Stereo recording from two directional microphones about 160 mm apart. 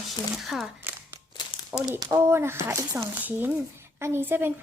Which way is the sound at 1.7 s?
10° right (ahead or behind).